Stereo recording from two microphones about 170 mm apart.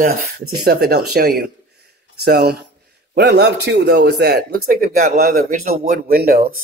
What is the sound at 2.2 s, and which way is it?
A man's voice, 75° right (ahead or behind).